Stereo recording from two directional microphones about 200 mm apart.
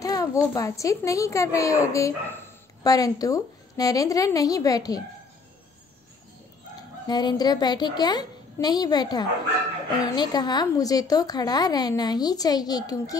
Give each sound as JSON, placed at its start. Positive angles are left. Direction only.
{"t": 0.0, "sound": "a sound", "side_deg": 20}
{"t": 0.6, "sound": "a woman's voice", "side_deg": 15}
{"t": 7.1, "sound": "a woman's voice", "side_deg": 20}